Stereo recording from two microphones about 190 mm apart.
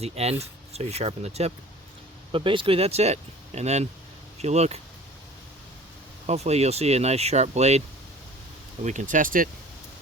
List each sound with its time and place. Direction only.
0.0 s speech: 35° right (ahead or behind)
6.2 s speech: 35° right (ahead or behind)
8.8 s speech: 40° right (ahead or behind)